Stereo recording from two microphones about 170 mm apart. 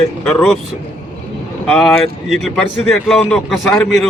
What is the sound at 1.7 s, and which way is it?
A man's voice, 5° left (ahead or behind).